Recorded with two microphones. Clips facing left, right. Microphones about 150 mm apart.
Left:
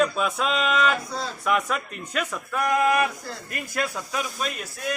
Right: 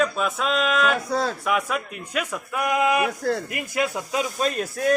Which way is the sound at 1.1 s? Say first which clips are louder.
Right 7 dB; 60° right (ahead or behind).